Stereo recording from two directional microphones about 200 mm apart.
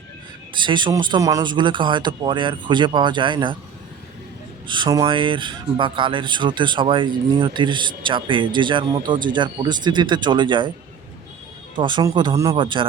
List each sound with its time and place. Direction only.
0.5 s speech: 25° right (ahead or behind)
4.7 s speech: 20° right (ahead or behind)
11.8 s speech: 20° right (ahead or behind)